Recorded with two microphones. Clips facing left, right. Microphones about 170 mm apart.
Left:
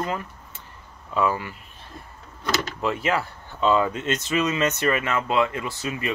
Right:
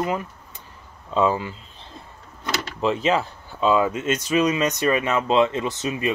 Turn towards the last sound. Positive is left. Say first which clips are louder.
# right 4 dB
turn(degrees=-20)  # may be behind; listen again after turning